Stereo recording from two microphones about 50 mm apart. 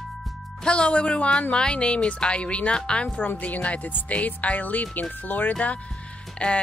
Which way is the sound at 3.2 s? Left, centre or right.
Left.